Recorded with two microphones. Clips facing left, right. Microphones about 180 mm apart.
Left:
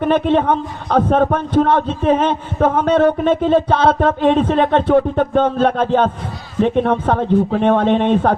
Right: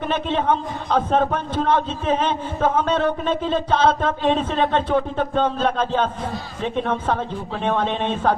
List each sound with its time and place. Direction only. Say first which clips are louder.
0.0 s a man's voice: left 8 dB; 60° left (ahead or behind)